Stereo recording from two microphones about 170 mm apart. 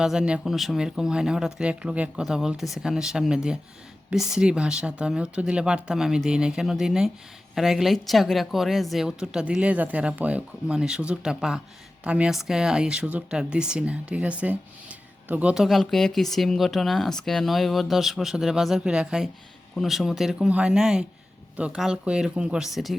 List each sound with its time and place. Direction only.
0.0 s speech: 5° right (ahead or behind)